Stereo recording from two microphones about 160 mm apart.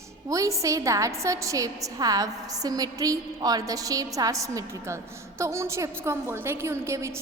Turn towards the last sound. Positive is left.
turn(degrees=-15)  # may be behind; listen again after turning